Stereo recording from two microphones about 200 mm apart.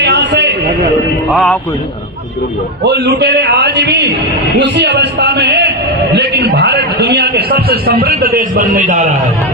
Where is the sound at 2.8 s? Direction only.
55° right (ahead or behind); by 9.1 s 40° right (ahead or behind).